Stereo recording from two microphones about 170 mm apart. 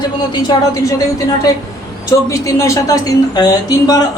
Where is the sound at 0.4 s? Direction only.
20° left (ahead or behind).